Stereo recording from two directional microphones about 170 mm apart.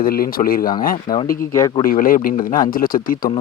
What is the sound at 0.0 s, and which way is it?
Speech, 60° left (ahead or behind).